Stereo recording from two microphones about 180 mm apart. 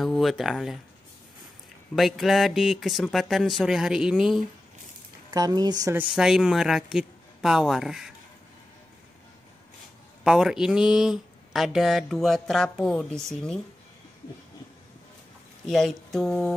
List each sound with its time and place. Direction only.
0.0 s speech: centre (ahead or behind)
2.0 s speech: centre (ahead or behind)
5.3 s speech: 20° right (ahead or behind)
5.9 s speech: 5° right (ahead or behind)
10.2 s speech: 5° right (ahead or behind)
15.6 s speech: centre (ahead or behind)